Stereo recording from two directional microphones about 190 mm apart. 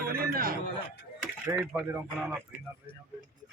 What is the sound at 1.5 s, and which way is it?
Speech, 10° right (ahead or behind).